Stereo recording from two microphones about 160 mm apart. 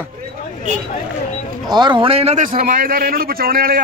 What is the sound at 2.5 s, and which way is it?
A man's voice, 60° right (ahead or behind).